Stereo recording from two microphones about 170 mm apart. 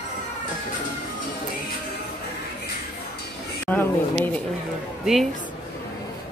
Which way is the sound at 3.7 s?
5° left (ahead or behind).